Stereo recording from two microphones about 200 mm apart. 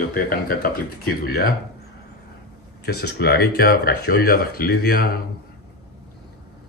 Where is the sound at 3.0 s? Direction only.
55° left (ahead or behind).